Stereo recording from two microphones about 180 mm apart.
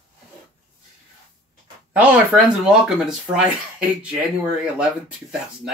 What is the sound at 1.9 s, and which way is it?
Speech, 5° right (ahead or behind).